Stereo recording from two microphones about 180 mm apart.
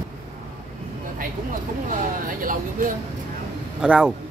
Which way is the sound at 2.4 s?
50° right (ahead or behind).